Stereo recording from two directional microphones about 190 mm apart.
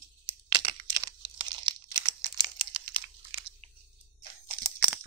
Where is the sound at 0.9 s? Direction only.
25° right (ahead or behind).